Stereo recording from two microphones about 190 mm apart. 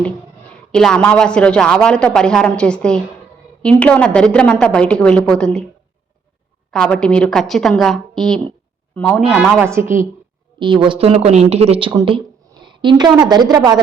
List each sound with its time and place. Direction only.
0.7 s speech: 5° left (ahead or behind)
6.7 s speech: 5° left (ahead or behind)
9.3 s a woman's voice: 5° right (ahead or behind)
10.6 s speech: 25° right (ahead or behind)